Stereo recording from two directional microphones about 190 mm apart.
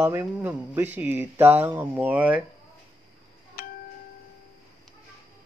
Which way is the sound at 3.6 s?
50° left (ahead or behind).